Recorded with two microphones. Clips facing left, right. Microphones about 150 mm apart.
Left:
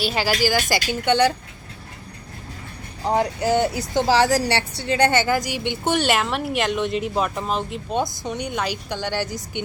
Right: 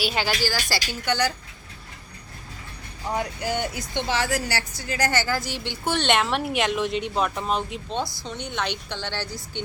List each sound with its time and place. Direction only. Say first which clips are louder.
0.0 s speech: left 3 dB; centre (ahead or behind)
0.4 s a woman's voice: left 6 dB; 15° left (ahead or behind)
3.0 s a woman's voice: left 7 dB; 35° left (ahead or behind); by 6.1 s 15° left (ahead or behind)
6.1 s speech: left 1 dB; centre (ahead or behind)
8.2 s a woman's voice: left 4 dB; 15° left (ahead or behind)